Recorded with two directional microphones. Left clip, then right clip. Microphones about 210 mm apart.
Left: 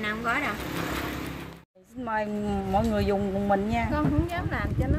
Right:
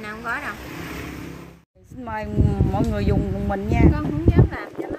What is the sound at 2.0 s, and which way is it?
Speech, 10° right (ahead or behind).